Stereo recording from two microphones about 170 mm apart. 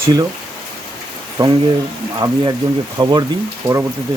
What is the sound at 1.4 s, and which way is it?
Speech, 20° right (ahead or behind).